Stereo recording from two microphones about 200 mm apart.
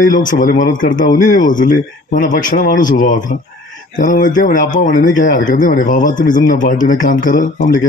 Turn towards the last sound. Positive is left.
turn(degrees=40)  # may be behind; listen again after turning